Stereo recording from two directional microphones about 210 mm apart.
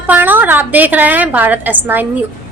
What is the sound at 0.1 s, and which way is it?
A woman's voice, 10° right (ahead or behind).